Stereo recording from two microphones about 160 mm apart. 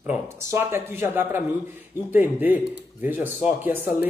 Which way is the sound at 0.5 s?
15° right (ahead or behind).